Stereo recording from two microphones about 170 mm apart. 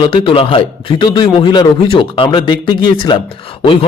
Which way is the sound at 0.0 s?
30° left (ahead or behind).